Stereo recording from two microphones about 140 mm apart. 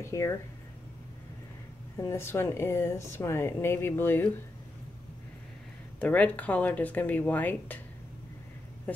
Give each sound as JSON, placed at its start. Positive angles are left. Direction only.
{"t": 0.0, "sound": "speech", "side_deg": 20}
{"t": 2.0, "sound": "speech", "side_deg": 20}
{"t": 5.9, "sound": "speech", "side_deg": 10}
{"t": 8.9, "sound": "speech", "side_deg": 10}